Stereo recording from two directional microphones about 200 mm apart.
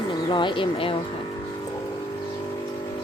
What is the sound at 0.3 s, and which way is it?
Speech, 25° left (ahead or behind).